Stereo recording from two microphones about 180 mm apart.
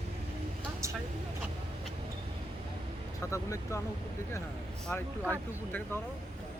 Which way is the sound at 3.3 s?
15° left (ahead or behind).